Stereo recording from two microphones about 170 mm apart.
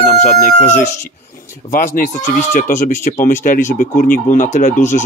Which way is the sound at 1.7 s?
50° left (ahead or behind).